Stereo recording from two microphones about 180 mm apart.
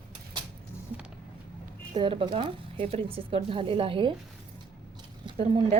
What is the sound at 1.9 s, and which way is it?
Speech, 30° right (ahead or behind).